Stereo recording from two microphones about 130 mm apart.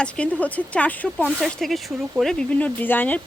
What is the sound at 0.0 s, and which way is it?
Speech, 10° left (ahead or behind).